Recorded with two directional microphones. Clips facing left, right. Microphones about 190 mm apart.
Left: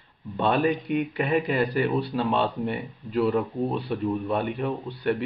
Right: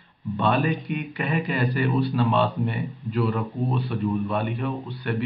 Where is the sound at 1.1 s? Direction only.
30° left (ahead or behind).